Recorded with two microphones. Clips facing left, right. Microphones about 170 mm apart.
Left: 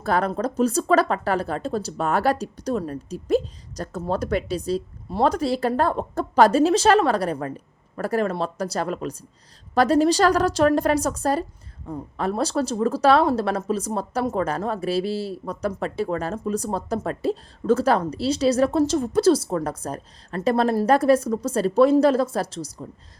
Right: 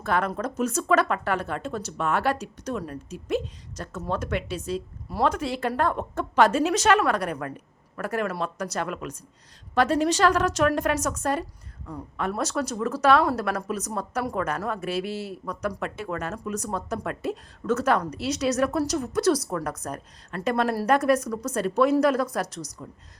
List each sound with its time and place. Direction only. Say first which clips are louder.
0.0 s a woman's voice: left 3 dB; 35° left (ahead or behind)